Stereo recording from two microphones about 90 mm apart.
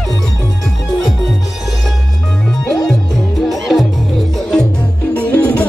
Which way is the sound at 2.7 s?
5° left (ahead or behind).